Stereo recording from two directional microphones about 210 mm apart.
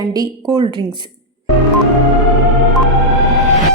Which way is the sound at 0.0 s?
15° right (ahead or behind).